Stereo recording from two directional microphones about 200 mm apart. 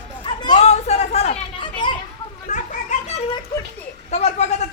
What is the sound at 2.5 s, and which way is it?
Children playing, 40° left (ahead or behind).